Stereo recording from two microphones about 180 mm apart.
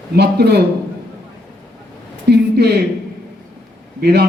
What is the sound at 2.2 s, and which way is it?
Speech, 65° right (ahead or behind).